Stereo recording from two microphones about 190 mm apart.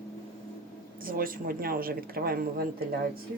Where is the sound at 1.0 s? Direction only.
50° right (ahead or behind).